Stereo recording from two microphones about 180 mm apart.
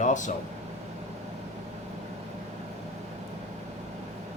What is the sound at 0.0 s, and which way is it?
Speech, 45° left (ahead or behind).